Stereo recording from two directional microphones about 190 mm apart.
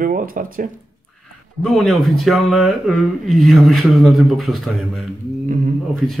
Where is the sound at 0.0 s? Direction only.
45° right (ahead or behind).